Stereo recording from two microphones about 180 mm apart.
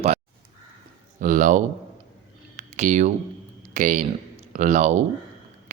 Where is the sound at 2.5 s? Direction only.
40° right (ahead or behind).